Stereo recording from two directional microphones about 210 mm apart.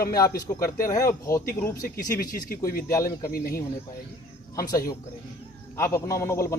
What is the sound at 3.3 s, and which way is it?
Speech, 45° left (ahead or behind).